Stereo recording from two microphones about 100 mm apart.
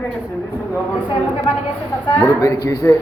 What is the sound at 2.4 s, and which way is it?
Speech, 35° left (ahead or behind).